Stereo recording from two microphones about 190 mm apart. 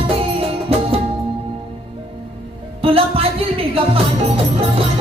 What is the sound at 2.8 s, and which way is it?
Music, 30° right (ahead or behind).